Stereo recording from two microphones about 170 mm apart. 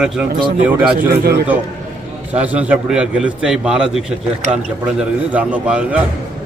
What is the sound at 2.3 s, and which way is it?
A man's voice, 10° right (ahead or behind).